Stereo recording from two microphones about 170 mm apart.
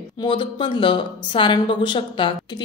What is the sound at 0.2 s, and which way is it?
A woman's voice, 30° left (ahead or behind).